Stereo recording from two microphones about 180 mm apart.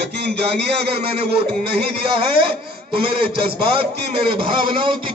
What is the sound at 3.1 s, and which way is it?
A man's voice, 30° right (ahead or behind).